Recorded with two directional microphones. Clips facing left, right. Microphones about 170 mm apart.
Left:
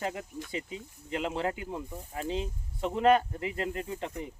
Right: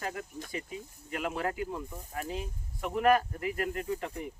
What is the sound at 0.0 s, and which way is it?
Speech, 20° left (ahead or behind).